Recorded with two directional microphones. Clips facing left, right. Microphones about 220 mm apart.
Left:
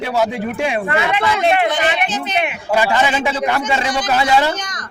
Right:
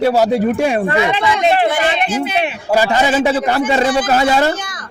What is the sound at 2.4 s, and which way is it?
Speech, 35° right (ahead or behind).